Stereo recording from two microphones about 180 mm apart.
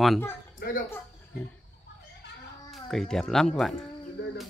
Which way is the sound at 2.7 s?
Centre (ahead or behind).